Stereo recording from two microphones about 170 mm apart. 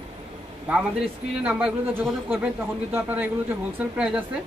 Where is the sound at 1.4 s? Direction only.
10° right (ahead or behind).